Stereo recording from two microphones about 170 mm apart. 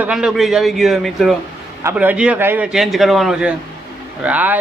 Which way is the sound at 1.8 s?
10° right (ahead or behind).